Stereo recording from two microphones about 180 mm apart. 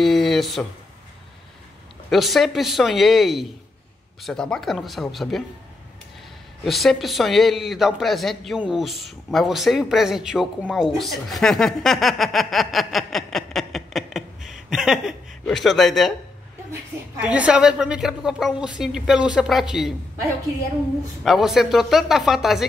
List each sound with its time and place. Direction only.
0.0 s a sound: centre (ahead or behind)
2.0 s speech: centre (ahead or behind)
6.6 s speech: centre (ahead or behind)
17.2 s speech: 5° right (ahead or behind)
21.2 s speech: centre (ahead or behind)